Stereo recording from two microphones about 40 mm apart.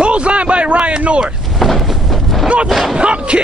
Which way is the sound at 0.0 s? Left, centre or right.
Right.